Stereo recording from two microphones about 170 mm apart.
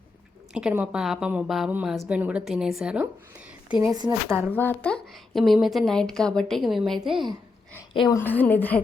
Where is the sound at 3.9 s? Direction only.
20° right (ahead or behind).